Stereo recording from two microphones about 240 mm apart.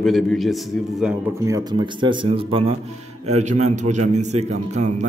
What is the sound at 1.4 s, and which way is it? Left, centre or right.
A man's voice, centre.